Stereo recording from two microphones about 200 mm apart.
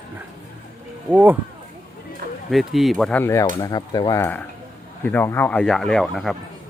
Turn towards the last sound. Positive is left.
turn(degrees=0)  # may be behind; listen again after turning